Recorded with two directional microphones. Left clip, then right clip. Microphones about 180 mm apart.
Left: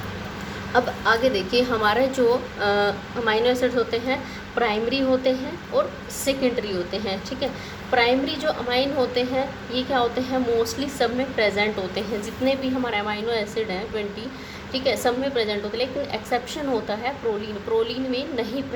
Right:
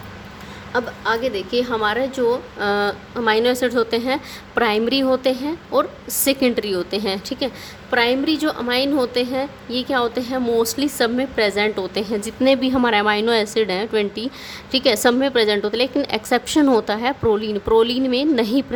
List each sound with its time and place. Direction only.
0.7 s a woman's voice: 25° right (ahead or behind); by 18.6 s 55° right (ahead or behind)